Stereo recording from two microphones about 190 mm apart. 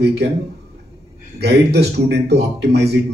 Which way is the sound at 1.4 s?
60° right (ahead or behind).